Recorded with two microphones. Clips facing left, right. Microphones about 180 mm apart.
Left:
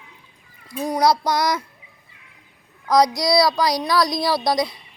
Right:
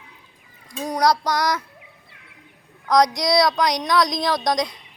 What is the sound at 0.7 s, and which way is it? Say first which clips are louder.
Speech: left 1 dB; 10° left (ahead or behind).